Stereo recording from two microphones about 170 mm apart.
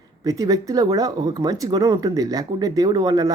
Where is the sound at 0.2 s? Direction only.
20° right (ahead or behind).